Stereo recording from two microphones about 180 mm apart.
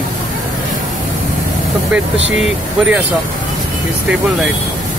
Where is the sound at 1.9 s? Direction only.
5° right (ahead or behind).